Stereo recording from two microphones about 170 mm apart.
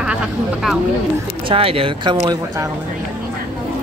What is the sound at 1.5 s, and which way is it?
Speech, 35° right (ahead or behind).